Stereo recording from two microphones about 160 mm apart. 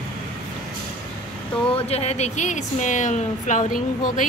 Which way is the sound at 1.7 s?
40° left (ahead or behind).